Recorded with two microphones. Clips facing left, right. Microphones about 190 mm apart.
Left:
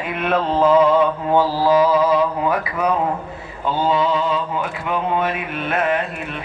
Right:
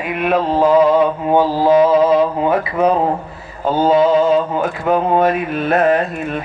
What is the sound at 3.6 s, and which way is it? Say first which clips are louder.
Mantra: right 6 dB; 45° right (ahead or behind).